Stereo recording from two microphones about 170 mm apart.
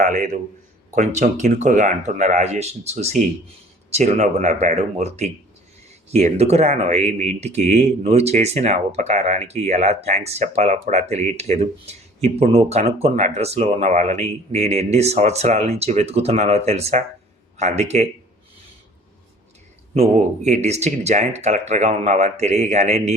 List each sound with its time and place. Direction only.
0.0 s speech: 50° right (ahead or behind)
19.9 s speech: 40° right (ahead or behind)